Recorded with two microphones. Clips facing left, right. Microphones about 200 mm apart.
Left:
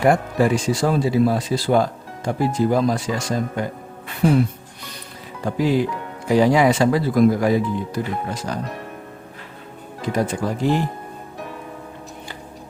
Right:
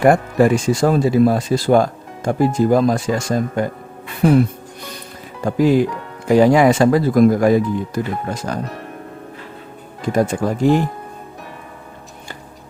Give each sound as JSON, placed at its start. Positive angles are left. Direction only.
{"t": 0.0, "sound": "speech", "side_deg": -50}
{"t": 5.5, "sound": "speech", "side_deg": -50}
{"t": 10.1, "sound": "speech", "side_deg": -50}